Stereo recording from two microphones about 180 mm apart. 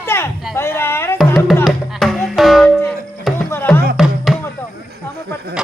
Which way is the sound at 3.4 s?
15° left (ahead or behind).